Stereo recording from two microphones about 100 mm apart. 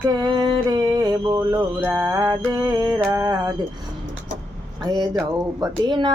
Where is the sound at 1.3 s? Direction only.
25° right (ahead or behind).